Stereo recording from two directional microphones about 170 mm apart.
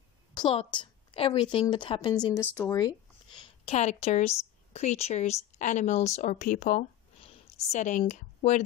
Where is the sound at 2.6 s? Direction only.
25° left (ahead or behind).